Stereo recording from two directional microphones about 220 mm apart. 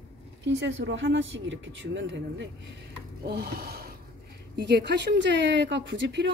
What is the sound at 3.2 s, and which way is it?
A woman's voice, 45° right (ahead or behind).